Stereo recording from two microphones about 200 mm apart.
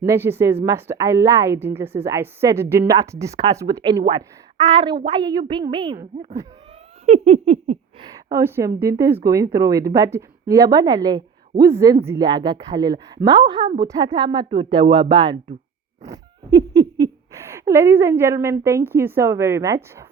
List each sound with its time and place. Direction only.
0.0 s a woman's voice: 15° right (ahead or behind)
7.0 s a sound: 35° right (ahead or behind)
8.3 s a woman's voice: 15° right (ahead or behind)